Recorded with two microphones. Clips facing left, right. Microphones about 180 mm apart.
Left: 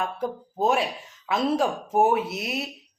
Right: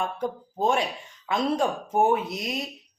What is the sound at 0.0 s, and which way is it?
A woman's voice, 5° left (ahead or behind).